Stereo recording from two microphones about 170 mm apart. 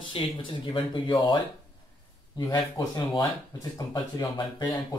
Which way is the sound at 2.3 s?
25° left (ahead or behind).